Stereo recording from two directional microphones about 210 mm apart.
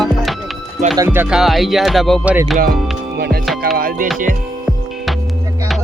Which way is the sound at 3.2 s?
50° right (ahead or behind).